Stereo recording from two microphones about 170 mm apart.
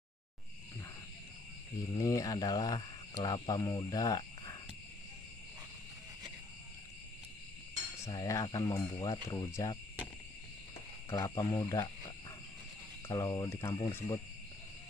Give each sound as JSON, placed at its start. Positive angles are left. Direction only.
{"t": 2.0, "sound": "speech", "side_deg": 20}
{"t": 8.0, "sound": "speech", "side_deg": 20}
{"t": 11.1, "sound": "speech", "side_deg": 15}
{"t": 13.1, "sound": "speech", "side_deg": 20}